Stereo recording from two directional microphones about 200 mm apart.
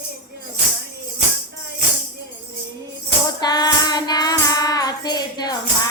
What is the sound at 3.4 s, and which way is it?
Child singing, 20° left (ahead or behind).